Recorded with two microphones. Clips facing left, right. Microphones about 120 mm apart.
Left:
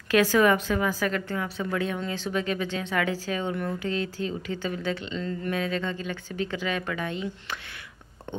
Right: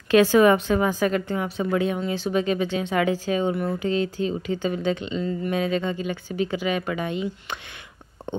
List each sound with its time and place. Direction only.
0.1 s a woman's voice: 20° right (ahead or behind)